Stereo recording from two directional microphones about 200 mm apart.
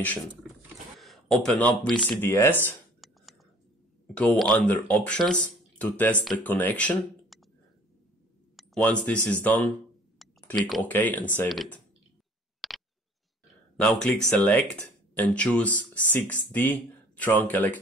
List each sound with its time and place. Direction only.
0.9 s a sound: centre (ahead or behind)
2.0 s speech: 10° left (ahead or behind)
4.1 s speech: 5° left (ahead or behind)
8.5 s speech: 5° left (ahead or behind)
12.5 s a sound: centre (ahead or behind)
13.7 s speech: 5° left (ahead or behind)